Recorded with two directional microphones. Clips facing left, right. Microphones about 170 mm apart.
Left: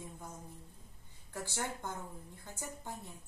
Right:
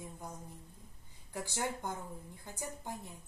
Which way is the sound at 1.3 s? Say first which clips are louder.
Right 2 dB; 15° right (ahead or behind).